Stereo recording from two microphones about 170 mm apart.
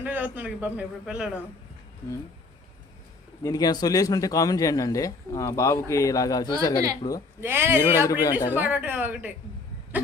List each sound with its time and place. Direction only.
0.0 s a man's voice: 10° right (ahead or behind)
3.4 s speech: 20° left (ahead or behind)
7.4 s a man's voice: 15° right (ahead or behind)
7.8 s speech: 20° left (ahead or behind)
8.5 s a man's voice: 10° right (ahead or behind)